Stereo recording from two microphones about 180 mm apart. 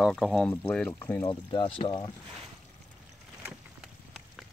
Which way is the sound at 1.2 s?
25° left (ahead or behind).